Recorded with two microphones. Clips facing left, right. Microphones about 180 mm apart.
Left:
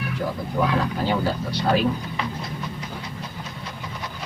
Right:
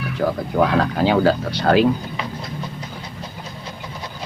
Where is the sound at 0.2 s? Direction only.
90° right.